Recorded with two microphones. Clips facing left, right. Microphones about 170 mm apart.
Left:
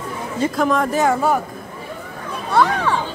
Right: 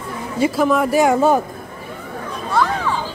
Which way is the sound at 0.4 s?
5° right (ahead or behind).